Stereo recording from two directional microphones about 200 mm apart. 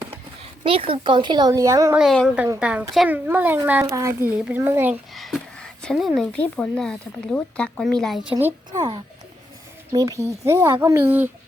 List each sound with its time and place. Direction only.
0.6 s speech: 25° right (ahead or behind)
2.0 s a woman's voice: centre (ahead or behind)
5.1 s speech: centre (ahead or behind)
9.9 s a child's voice: 15° right (ahead or behind)